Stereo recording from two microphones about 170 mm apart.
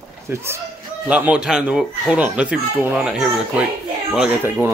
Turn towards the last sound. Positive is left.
turn(degrees=-5)  # may be behind; listen again after turning